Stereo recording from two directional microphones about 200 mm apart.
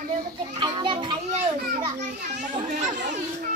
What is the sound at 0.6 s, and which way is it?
Children playing, 25° right (ahead or behind).